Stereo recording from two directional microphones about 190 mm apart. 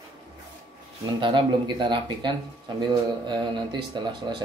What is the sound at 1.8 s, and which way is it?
Speech, 25° right (ahead or behind).